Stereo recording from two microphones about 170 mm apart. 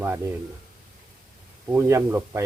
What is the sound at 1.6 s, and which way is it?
Speech, 15° right (ahead or behind).